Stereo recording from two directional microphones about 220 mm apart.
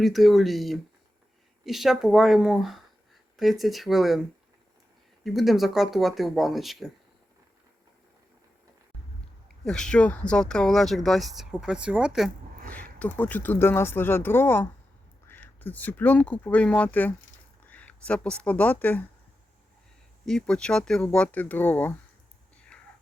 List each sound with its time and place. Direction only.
0.0 s speech: centre (ahead or behind)
5.2 s speech: centre (ahead or behind)
9.6 s speech: 5° left (ahead or behind)
20.2 s speech: 5° left (ahead or behind)
22.7 s whispering: 5° left (ahead or behind)